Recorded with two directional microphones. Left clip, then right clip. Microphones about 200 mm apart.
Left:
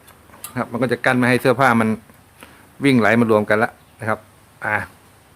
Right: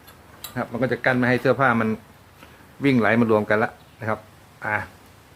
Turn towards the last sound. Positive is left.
turn(degrees=35)  # may be behind; listen again after turning